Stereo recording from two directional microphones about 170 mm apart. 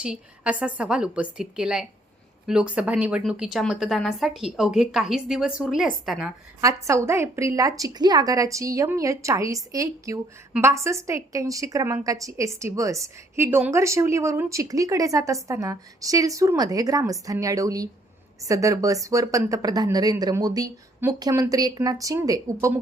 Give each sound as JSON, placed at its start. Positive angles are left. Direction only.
{"t": 0.0, "sound": "a woman's voice", "side_deg": -5}
{"t": 6.6, "sound": "a woman's voice", "side_deg": -20}